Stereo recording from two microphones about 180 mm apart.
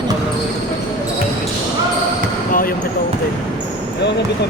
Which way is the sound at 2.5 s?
50° left (ahead or behind).